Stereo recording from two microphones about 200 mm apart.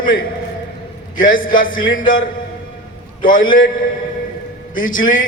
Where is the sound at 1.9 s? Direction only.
45° left (ahead or behind).